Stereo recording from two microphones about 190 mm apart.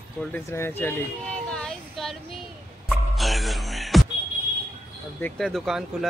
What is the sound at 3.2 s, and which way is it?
Music, centre (ahead or behind).